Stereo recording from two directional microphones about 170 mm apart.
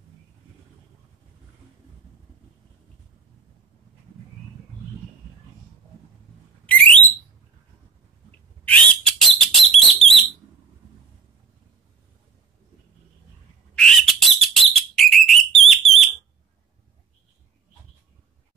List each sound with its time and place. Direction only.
6.6 s alarm: 10° left (ahead or behind)
8.6 s bird: 10° left (ahead or behind)
13.7 s bird: 5° left (ahead or behind)